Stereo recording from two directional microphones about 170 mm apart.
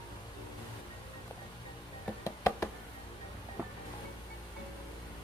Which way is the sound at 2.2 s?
15° left (ahead or behind).